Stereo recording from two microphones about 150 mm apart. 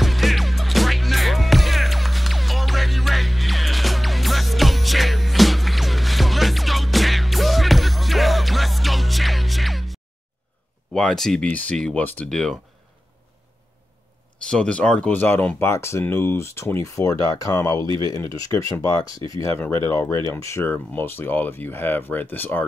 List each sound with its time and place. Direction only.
0.0 s music: centre (ahead or behind)
10.9 s speech: 5° left (ahead or behind)
14.5 s speech: 5° left (ahead or behind)